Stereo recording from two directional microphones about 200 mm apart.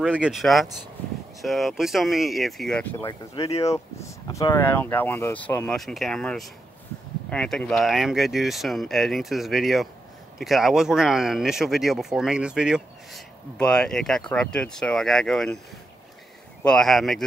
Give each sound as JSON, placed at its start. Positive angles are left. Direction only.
{"t": 0.0, "sound": "speech", "side_deg": -5}
{"t": 3.4, "sound": "speech", "side_deg": 30}
{"t": 3.7, "sound": "speech", "side_deg": 15}
{"t": 16.6, "sound": "speech", "side_deg": 0}